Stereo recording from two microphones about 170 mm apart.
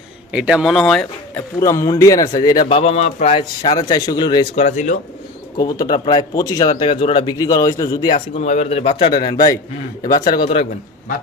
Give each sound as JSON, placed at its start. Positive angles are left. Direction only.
{"t": 0.3, "sound": "speech", "side_deg": -5}
{"t": 1.6, "sound": "speech", "side_deg": 20}
{"t": 2.7, "sound": "a man's voice", "side_deg": 40}
{"t": 3.6, "sound": "speech", "side_deg": 20}
{"t": 4.5, "sound": "speech", "side_deg": 40}
{"t": 5.7, "sound": "speech", "side_deg": 25}
{"t": 8.4, "sound": "a man's voice", "side_deg": 45}